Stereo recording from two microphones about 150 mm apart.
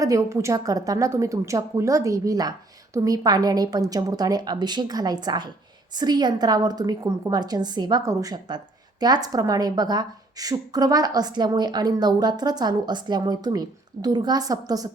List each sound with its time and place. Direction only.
0.0 s a woman's voice: 20° right (ahead or behind)